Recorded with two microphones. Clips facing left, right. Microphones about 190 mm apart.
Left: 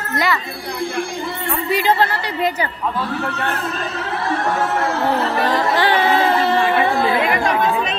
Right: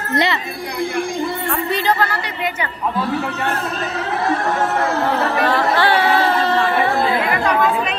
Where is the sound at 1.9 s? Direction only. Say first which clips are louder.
Left 2 dB; 30° left (ahead or behind).